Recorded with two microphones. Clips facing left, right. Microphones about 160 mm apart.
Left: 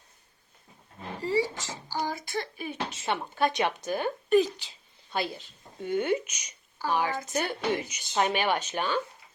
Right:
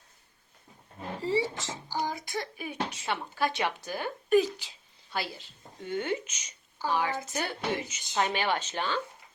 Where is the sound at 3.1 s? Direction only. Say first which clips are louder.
Left 4 dB; 20° left (ahead or behind).